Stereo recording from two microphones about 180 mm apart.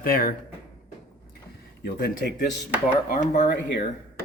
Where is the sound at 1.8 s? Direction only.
60° left (ahead or behind).